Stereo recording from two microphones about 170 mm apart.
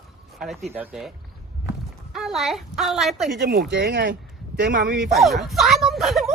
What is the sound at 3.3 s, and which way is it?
Speech, 70° right (ahead or behind).